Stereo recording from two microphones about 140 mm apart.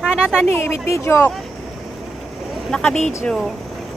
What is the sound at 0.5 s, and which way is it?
Speech, 15° left (ahead or behind).